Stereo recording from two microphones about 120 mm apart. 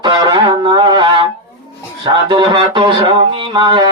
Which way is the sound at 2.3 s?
40° right (ahead or behind).